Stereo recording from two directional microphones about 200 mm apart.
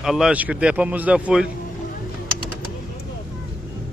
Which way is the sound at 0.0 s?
5° right (ahead or behind).